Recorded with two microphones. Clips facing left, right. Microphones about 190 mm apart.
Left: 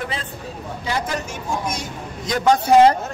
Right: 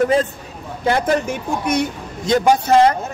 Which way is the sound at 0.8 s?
55° right (ahead or behind).